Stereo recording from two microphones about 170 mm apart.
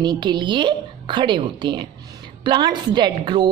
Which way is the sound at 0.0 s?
25° right (ahead or behind).